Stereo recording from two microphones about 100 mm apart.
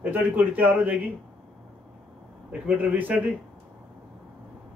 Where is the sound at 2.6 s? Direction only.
15° right (ahead or behind).